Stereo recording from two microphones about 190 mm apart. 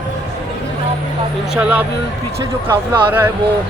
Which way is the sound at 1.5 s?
5° right (ahead or behind).